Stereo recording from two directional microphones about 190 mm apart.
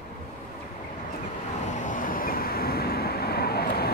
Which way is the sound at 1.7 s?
45° left (ahead or behind).